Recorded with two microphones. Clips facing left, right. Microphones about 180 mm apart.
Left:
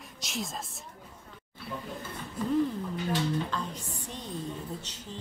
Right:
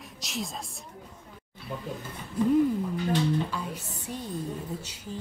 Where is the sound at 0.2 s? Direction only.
Centre (ahead or behind).